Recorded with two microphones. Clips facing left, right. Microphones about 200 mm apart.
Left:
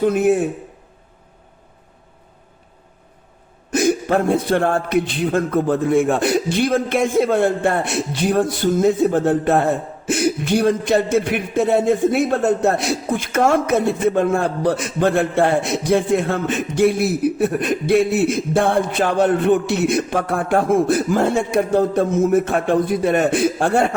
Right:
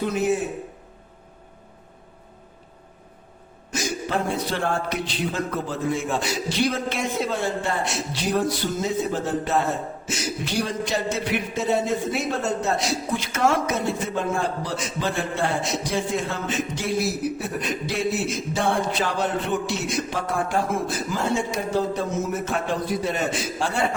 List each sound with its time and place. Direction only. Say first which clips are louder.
0.0 s a man's voice: left 7 dB; 55° left (ahead or behind)
3.7 s a man's voice: left 10 dB; 55° left (ahead or behind)